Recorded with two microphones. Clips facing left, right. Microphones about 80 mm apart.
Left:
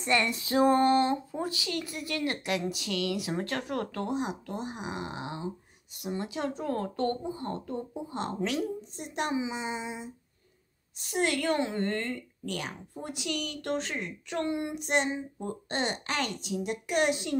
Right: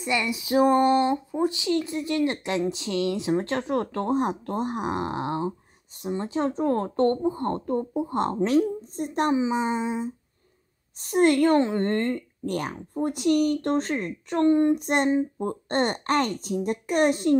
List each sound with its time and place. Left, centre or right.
0.0 s speech: centre; by 4.0 s right
4.0 s speech: right
6.0 s a woman's voice: right
7.2 s a woman's voice: right